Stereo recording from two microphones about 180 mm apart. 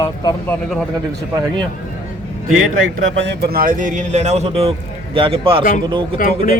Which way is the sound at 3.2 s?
65° right (ahead or behind).